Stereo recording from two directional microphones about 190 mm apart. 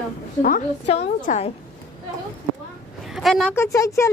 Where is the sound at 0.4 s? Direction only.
45° left (ahead or behind).